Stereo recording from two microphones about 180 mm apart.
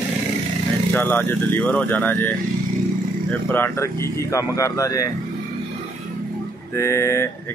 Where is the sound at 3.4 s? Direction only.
10° left (ahead or behind).